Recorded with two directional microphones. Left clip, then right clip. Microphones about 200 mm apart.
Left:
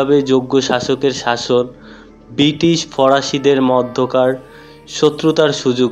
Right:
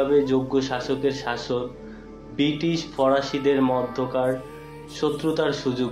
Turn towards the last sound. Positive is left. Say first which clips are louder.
# left 10 dB
turn(degrees=45)  # may be behind; listen again after turning